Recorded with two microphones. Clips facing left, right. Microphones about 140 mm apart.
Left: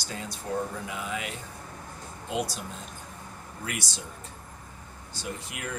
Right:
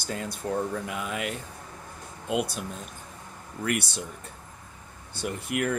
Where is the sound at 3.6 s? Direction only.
60° right (ahead or behind).